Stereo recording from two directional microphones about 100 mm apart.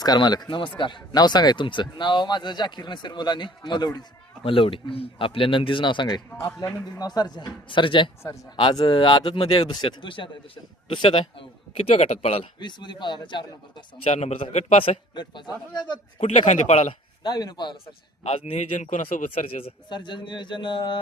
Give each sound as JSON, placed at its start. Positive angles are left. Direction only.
{"t": 0.0, "sound": "speech", "side_deg": 45}
{"t": 4.4, "sound": "speech", "side_deg": 65}
{"t": 12.5, "sound": "speech", "side_deg": 50}
{"t": 14.1, "sound": "a man's voice", "side_deg": 90}
{"t": 16.2, "sound": "speech", "side_deg": 90}
{"t": 17.2, "sound": "speech", "side_deg": 45}
{"t": 17.8, "sound": "speech", "side_deg": 90}
{"t": 19.3, "sound": "a man's voice", "side_deg": 75}
{"t": 19.9, "sound": "speech", "side_deg": 50}